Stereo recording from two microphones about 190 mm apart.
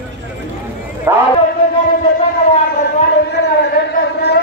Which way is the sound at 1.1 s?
15° right (ahead or behind).